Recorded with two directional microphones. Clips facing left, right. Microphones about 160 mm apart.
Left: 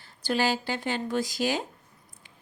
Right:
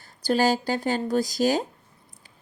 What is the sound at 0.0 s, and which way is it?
A woman's voice, 40° right (ahead or behind).